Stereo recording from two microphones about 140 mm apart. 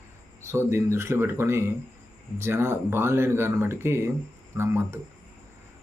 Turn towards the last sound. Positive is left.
turn(degrees=-20)  # may be behind; listen again after turning